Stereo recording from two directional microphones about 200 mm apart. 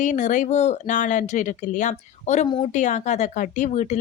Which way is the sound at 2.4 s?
25° left (ahead or behind).